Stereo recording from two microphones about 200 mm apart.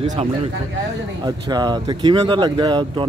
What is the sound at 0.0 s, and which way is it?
Speech, 20° right (ahead or behind).